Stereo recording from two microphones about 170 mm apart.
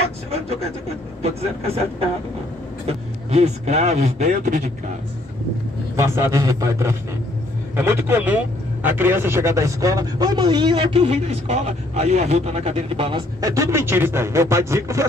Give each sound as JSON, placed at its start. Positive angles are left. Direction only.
{"t": 1.2, "sound": "a man's voice", "side_deg": -35}
{"t": 5.9, "sound": "speech", "side_deg": -15}
{"t": 13.4, "sound": "speech", "side_deg": -20}